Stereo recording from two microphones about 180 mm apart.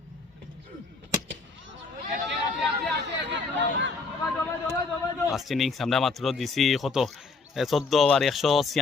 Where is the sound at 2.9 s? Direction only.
85° right.